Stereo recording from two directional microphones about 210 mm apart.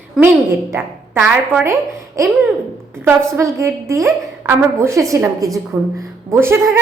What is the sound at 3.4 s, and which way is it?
A woman's voice, 15° right (ahead or behind).